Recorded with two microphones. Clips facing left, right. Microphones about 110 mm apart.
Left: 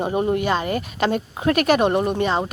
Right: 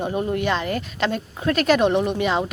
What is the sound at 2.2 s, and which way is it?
Speech, centre (ahead or behind).